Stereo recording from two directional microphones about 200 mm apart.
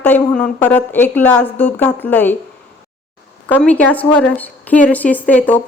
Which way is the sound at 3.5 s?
5° left (ahead or behind).